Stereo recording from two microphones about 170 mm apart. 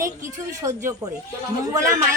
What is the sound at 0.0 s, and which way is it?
Speech, 20° right (ahead or behind).